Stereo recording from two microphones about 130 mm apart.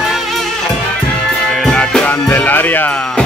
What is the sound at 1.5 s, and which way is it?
Music, 5° left (ahead or behind).